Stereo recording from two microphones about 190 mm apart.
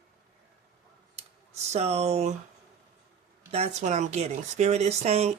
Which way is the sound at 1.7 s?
35° right (ahead or behind).